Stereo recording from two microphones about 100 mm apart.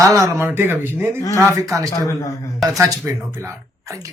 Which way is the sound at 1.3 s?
35° right (ahead or behind).